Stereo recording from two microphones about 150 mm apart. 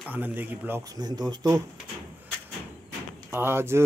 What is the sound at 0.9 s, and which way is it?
Speech, 25° right (ahead or behind).